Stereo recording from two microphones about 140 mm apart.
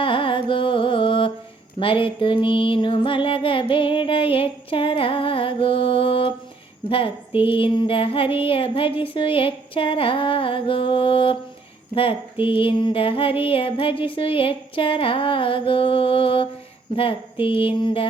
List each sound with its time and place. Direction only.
0.0 s carnatic music: 40° left (ahead or behind)
1.8 s music: 40° left (ahead or behind)